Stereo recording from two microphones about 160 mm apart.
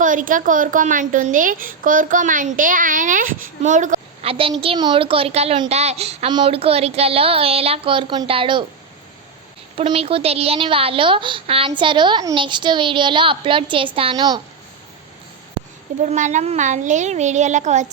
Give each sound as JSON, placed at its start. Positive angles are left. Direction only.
{"t": 0.0, "sound": "a woman's voice", "side_deg": -55}
{"t": 4.2, "sound": "a child's voice", "side_deg": -35}
{"t": 9.7, "sound": "a woman's voice", "side_deg": -35}
{"t": 16.1, "sound": "a woman's voice", "side_deg": -50}